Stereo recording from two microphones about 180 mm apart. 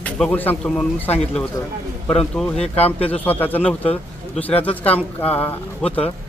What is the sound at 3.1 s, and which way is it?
A man's voice, 10° left (ahead or behind).